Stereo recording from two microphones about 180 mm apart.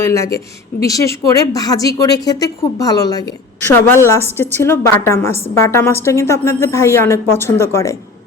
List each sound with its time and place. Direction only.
0.0 s a woman's voice: 15° left (ahead or behind)